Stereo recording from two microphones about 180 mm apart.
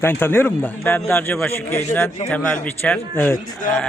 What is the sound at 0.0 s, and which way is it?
A man's voice, 10° left (ahead or behind).